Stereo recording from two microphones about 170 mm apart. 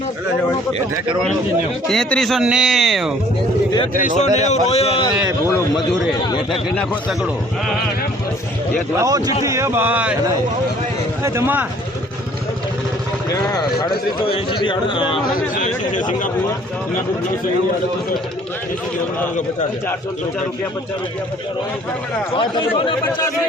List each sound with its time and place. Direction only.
1.9 s a man's voice: 5° left (ahead or behind)
3.9 s a man's voice: 45° left (ahead or behind)
6.5 s a man's voice: centre (ahead or behind)
9.0 s a man's voice: 20° right (ahead or behind)
11.2 s speech: 15° right (ahead or behind)
13.3 s a man's voice: 20° left (ahead or behind)
15.5 s speech: 50° left (ahead or behind)
22.3 s a man's voice: 30° left (ahead or behind)